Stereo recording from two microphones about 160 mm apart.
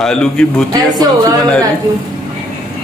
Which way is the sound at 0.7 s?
25° right (ahead or behind).